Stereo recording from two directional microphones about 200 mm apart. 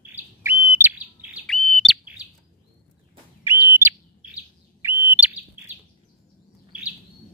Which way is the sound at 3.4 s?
10° right (ahead or behind).